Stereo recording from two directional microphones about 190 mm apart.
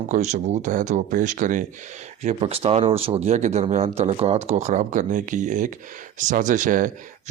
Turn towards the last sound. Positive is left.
turn(degrees=-45)  # may be behind; listen again after turning